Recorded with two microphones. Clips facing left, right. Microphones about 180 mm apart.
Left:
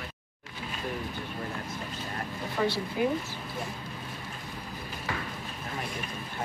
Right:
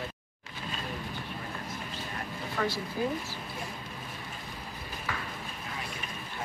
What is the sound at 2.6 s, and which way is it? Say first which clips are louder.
Speech: left 3 dB; 15° left (ahead or behind).